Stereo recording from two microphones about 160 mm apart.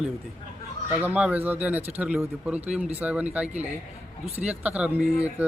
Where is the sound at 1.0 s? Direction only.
10° right (ahead or behind).